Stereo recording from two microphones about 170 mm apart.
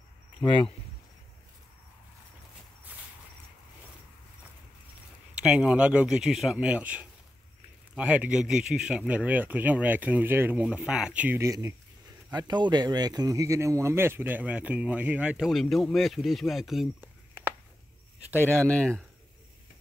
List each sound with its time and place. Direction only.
0.4 s speech: 30° left (ahead or behind)
5.4 s a man's voice: 5° right (ahead or behind)
17.0 s a sound: 10° right (ahead or behind)
18.8 s a man's voice: 5° left (ahead or behind)